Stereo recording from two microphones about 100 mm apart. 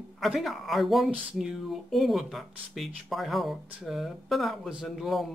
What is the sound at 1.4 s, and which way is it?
Speech, 5° right (ahead or behind).